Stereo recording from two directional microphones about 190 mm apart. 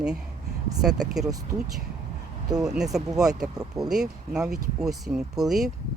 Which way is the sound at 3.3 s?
20° right (ahead or behind).